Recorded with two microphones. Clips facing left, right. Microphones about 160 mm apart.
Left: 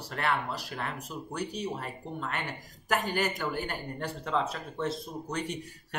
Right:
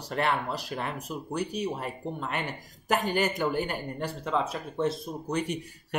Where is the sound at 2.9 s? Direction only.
20° right (ahead or behind).